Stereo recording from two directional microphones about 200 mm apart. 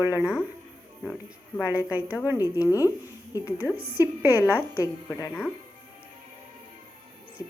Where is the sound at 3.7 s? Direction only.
50° right (ahead or behind).